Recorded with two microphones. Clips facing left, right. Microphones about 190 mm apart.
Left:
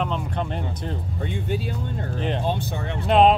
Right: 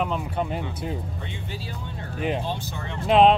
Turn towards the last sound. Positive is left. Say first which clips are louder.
# even
turn(degrees=0)  # may be behind; listen again after turning